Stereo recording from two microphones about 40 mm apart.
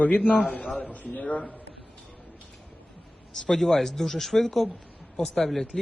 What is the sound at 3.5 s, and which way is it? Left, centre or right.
Speech, centre.